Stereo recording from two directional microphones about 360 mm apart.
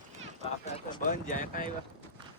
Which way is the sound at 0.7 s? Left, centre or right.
Centre.